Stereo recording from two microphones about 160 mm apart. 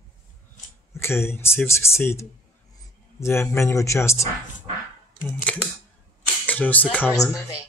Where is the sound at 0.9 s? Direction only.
15° left (ahead or behind).